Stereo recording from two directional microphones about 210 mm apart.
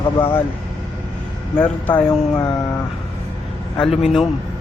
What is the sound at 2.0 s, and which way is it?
Speech, 20° left (ahead or behind).